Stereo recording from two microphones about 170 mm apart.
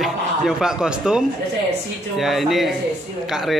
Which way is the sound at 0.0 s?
5° right (ahead or behind).